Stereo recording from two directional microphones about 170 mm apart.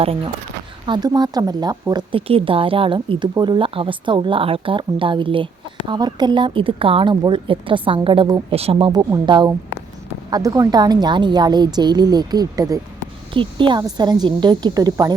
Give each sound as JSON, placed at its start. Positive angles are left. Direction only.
{"t": 0.9, "sound": "speech", "side_deg": -25}